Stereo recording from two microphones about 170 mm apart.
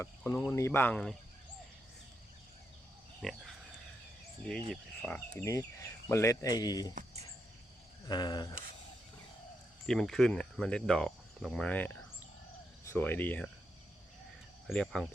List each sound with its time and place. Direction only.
0.0 s speech: 10° left (ahead or behind)
3.2 s speech: centre (ahead or behind)
4.7 s speech: 5° left (ahead or behind)
5.4 s speech: 20° left (ahead or behind)
8.0 s speech: 25° left (ahead or behind)
9.8 s speech: centre (ahead or behind)
14.7 s speech: centre (ahead or behind)